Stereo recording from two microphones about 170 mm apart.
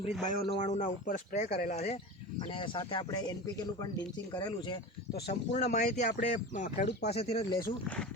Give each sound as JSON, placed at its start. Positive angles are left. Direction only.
{"t": 0.0, "sound": "speech", "side_deg": 40}
{"t": 2.5, "sound": "speech", "side_deg": 30}
{"t": 5.3, "sound": "speech", "side_deg": 40}
{"t": 7.1, "sound": "speech", "side_deg": 35}
{"t": 7.6, "sound": "speech", "side_deg": 10}